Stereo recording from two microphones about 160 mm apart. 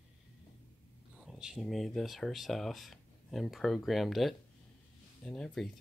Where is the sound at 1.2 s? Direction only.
Centre (ahead or behind).